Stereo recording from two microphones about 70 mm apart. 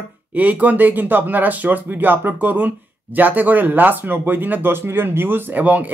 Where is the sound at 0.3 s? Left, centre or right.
Right.